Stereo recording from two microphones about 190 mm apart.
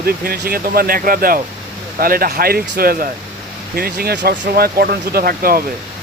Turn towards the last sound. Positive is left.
turn(degrees=-50)  # may be behind; listen again after turning